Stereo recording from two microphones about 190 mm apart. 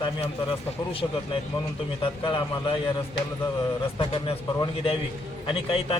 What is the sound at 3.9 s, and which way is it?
A man's voice, 25° left (ahead or behind).